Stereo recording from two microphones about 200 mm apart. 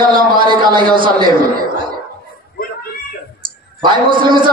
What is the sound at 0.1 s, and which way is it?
A man's voice, 25° right (ahead or behind).